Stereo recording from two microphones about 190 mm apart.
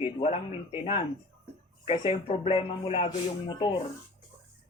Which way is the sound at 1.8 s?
30° left (ahead or behind).